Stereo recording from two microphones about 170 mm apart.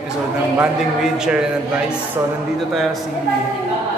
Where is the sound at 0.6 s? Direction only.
5° right (ahead or behind).